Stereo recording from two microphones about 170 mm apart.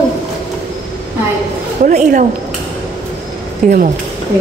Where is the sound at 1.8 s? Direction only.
50° right (ahead or behind).